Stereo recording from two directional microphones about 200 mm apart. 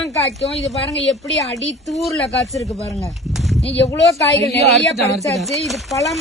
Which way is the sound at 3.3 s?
Centre (ahead or behind).